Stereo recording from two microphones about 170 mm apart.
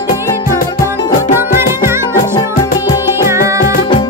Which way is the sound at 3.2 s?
15° right (ahead or behind).